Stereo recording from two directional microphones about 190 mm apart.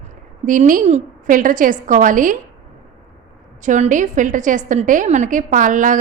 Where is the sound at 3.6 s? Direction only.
40° right (ahead or behind).